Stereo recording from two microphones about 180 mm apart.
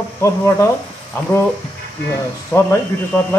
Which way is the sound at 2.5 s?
10° left (ahead or behind).